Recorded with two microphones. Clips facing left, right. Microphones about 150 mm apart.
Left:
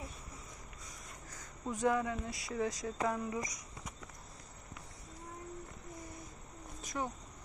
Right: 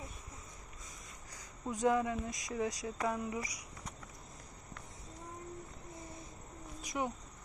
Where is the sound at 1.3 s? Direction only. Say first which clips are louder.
Even; 15° right (ahead or behind).